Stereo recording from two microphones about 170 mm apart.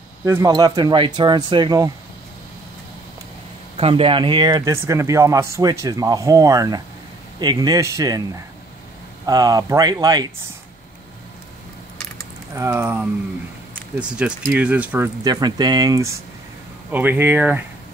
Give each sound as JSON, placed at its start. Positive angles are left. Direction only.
{"t": 0.2, "sound": "speech", "side_deg": -15}
{"t": 3.7, "sound": "speech", "side_deg": -35}
{"t": 9.2, "sound": "speech", "side_deg": -20}
{"t": 12.5, "sound": "speech", "side_deg": -15}
{"t": 15.2, "sound": "speech", "side_deg": -25}
{"t": 16.9, "sound": "speech", "side_deg": -10}